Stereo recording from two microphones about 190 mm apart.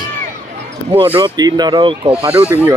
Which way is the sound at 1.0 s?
30° right (ahead or behind).